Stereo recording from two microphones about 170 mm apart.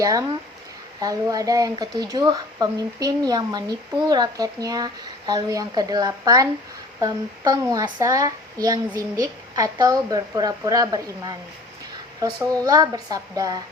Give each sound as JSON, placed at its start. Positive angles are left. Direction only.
{"t": 0.0, "sound": "speech", "side_deg": -20}
{"t": 12.6, "sound": "speech", "side_deg": -20}